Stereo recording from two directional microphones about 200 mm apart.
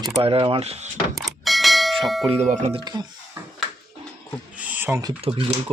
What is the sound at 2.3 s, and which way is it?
Speech, 35° right (ahead or behind).